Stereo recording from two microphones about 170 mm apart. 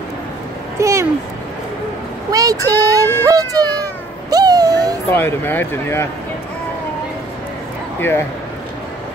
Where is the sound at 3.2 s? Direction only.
20° right (ahead or behind).